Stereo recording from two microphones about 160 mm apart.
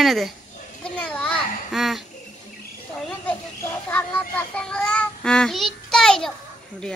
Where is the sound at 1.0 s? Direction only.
5° left (ahead or behind).